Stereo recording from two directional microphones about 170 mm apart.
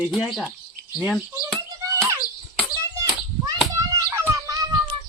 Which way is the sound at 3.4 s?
20° right (ahead or behind).